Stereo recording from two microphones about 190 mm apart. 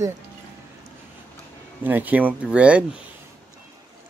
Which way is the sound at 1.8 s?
10° right (ahead or behind).